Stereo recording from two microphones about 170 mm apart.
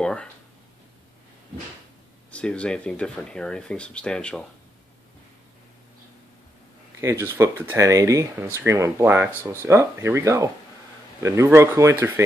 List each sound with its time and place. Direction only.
0.0 s a sound: 5° left (ahead or behind)
2.3 s speech: 5° left (ahead or behind)
7.0 s speech: 15° right (ahead or behind)